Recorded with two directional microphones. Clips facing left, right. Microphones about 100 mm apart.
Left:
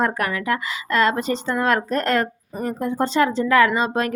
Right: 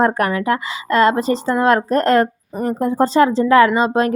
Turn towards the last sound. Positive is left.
turn(degrees=-30)  # may be behind; listen again after turning